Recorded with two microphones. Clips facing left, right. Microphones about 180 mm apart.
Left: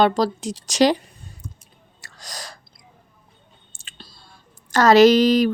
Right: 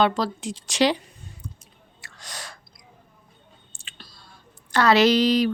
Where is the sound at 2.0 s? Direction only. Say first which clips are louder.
Left 2 dB; 40° left (ahead or behind).